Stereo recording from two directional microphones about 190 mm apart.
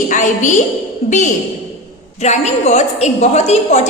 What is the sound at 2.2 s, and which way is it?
A woman's voice, 35° left (ahead or behind).